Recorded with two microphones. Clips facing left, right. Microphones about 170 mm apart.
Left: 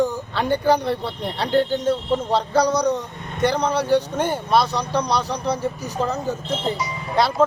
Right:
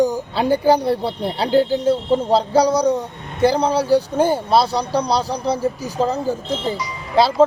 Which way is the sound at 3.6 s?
35° right (ahead or behind).